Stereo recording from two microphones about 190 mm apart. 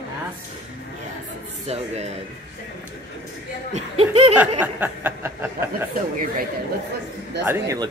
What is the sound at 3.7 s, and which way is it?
Laughter, 30° right (ahead or behind).